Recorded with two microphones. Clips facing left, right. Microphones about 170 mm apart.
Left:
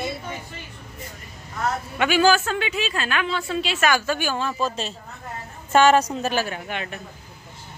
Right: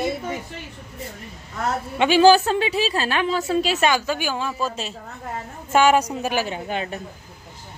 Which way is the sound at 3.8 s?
15° right (ahead or behind).